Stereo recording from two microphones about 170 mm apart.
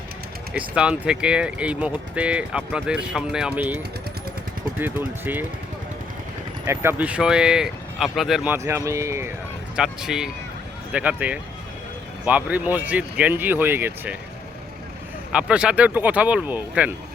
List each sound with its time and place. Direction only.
0.5 s speech: 5° right (ahead or behind)
4.8 s speech: 10° right (ahead or behind)
6.7 s speech: 10° right (ahead or behind)
8.5 s speech: 15° right (ahead or behind)
9.7 s speech: 5° right (ahead or behind)
15.3 s speech: 5° right (ahead or behind)